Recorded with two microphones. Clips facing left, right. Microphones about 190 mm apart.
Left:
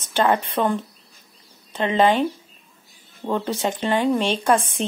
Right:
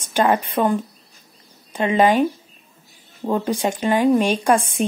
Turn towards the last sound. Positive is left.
turn(degrees=-10)  # may be behind; listen again after turning